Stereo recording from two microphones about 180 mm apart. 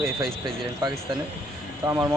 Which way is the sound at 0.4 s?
25° right (ahead or behind).